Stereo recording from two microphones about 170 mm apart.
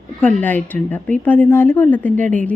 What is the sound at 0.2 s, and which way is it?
Speech, 10° left (ahead or behind).